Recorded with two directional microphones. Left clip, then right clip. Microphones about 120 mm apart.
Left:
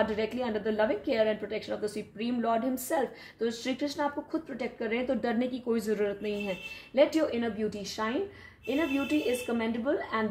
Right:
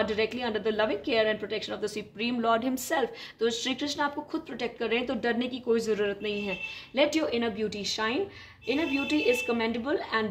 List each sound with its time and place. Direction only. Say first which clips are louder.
0.0 s a woman's voice: right 1 dB; 35° left (ahead or behind)
5.4 s a woman's voice: right 3 dB; 40° left (ahead or behind)
7.0 s a woman's voice: even; 20° left (ahead or behind)